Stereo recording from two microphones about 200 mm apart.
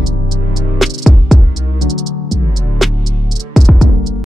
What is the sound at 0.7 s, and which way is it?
Music, centre (ahead or behind).